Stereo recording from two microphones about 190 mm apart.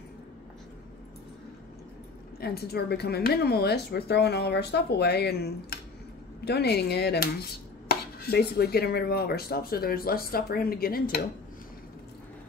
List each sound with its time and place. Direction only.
2.4 s chopping: 55° left (ahead or behind)